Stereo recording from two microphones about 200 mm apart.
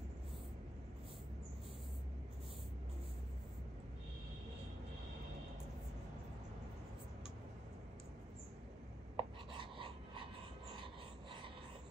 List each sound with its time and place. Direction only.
9.1 s writing: 25° right (ahead or behind)